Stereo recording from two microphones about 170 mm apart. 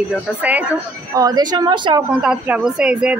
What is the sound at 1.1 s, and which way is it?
Speech, 20° right (ahead or behind).